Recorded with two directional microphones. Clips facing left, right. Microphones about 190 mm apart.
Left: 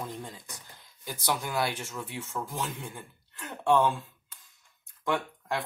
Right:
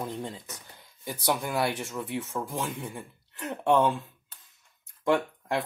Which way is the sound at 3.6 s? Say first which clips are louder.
Right 1 dB; 25° right (ahead or behind).